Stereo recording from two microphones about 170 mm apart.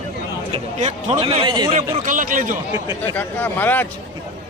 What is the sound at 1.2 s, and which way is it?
Speech, 30° right (ahead or behind).